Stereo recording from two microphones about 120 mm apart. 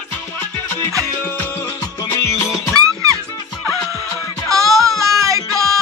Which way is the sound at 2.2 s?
25° left (ahead or behind).